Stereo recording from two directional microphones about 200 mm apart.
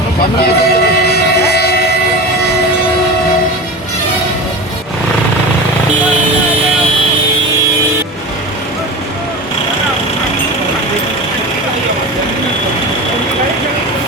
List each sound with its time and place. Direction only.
0.4 s train: 50° left (ahead or behind)